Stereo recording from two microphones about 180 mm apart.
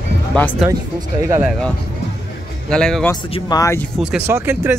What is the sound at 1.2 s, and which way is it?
Speech, 15° right (ahead or behind).